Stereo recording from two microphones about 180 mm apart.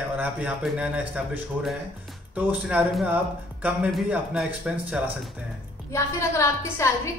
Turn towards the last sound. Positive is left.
turn(degrees=15)  # may be behind; listen again after turning